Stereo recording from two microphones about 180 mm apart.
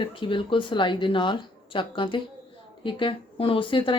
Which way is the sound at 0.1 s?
30° left (ahead or behind).